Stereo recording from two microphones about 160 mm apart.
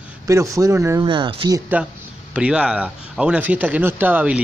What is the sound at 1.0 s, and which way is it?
Speech, 30° right (ahead or behind).